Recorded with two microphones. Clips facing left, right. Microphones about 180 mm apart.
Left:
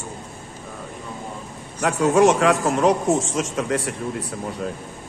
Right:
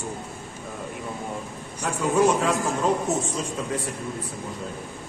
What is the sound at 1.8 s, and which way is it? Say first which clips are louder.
A man's voice: left 5 dB; 75° left (ahead or behind).